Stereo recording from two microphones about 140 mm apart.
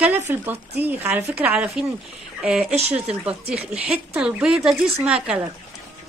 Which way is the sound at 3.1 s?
5° right (ahead or behind).